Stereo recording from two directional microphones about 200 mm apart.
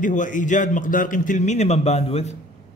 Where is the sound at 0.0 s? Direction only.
40° left (ahead or behind).